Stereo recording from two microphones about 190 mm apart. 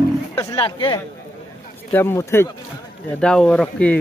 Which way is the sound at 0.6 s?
25° left (ahead or behind).